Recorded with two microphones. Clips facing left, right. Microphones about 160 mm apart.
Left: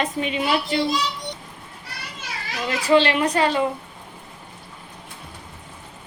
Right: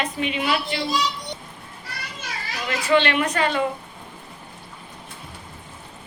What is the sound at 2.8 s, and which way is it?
Speech, 35° left (ahead or behind).